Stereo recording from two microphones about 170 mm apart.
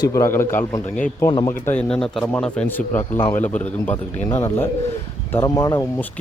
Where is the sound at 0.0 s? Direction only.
15° left (ahead or behind).